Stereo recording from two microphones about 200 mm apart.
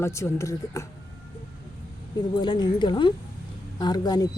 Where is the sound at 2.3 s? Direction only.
20° left (ahead or behind).